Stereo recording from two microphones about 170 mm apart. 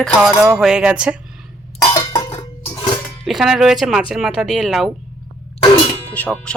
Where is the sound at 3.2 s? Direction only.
Centre (ahead or behind).